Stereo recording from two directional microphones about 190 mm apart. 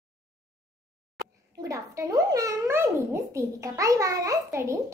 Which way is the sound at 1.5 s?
15° right (ahead or behind).